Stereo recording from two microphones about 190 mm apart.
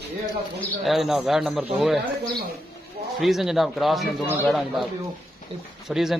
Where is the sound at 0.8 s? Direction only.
Centre (ahead or behind).